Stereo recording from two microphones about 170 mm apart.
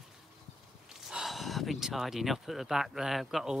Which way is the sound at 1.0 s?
Centre (ahead or behind).